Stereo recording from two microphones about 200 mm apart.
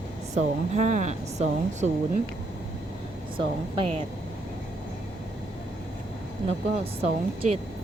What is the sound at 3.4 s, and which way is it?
Speech, 25° right (ahead or behind).